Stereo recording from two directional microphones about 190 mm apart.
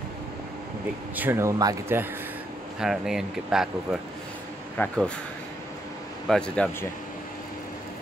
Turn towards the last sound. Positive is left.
turn(degrees=5)  # may be behind; listen again after turning